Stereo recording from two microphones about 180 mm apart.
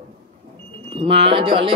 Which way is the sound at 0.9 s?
30° right (ahead or behind).